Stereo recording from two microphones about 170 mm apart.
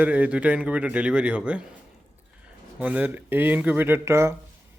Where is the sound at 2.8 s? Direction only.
10° right (ahead or behind).